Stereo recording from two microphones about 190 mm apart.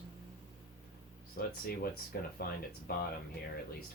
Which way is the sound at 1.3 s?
50° left (ahead or behind).